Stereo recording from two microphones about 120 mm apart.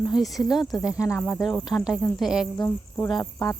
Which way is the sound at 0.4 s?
35° left (ahead or behind).